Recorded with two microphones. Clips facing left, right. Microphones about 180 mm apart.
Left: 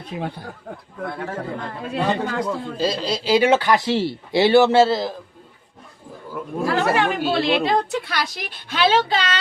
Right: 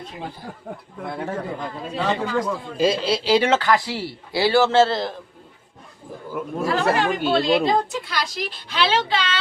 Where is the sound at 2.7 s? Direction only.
10° right (ahead or behind).